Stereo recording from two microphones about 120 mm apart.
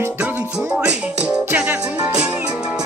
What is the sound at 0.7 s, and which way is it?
Music, 10° right (ahead or behind).